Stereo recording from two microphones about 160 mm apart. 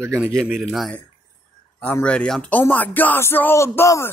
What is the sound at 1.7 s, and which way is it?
Speech, 10° left (ahead or behind).